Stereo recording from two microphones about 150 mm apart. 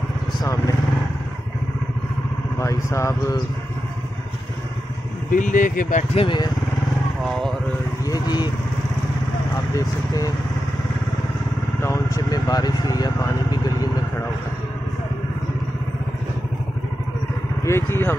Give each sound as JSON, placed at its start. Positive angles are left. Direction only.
{"t": 0.4, "sound": "speech", "side_deg": 20}
{"t": 2.6, "sound": "speech", "side_deg": 20}
{"t": 5.3, "sound": "speech", "side_deg": 60}
{"t": 6.1, "sound": "speech", "side_deg": 30}
{"t": 7.2, "sound": "speech", "side_deg": 0}
{"t": 8.0, "sound": "vehicle", "side_deg": 25}
{"t": 9.8, "sound": "speech", "side_deg": 25}
{"t": 11.8, "sound": "vehicle", "side_deg": 20}
{"t": 17.6, "sound": "speech", "side_deg": 15}